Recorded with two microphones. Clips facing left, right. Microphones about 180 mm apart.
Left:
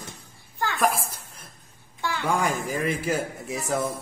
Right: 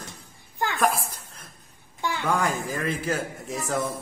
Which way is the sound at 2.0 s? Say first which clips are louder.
Even; 15° right (ahead or behind).